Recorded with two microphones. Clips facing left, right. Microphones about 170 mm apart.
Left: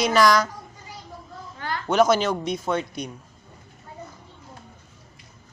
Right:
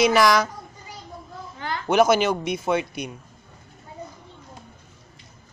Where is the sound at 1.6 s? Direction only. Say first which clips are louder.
Right 2 dB; 20° right (ahead or behind).